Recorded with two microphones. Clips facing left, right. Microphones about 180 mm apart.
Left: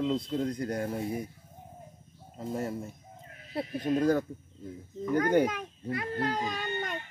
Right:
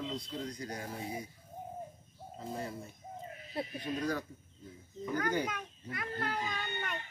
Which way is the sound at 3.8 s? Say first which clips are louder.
Left 11 dB; 50° left (ahead or behind).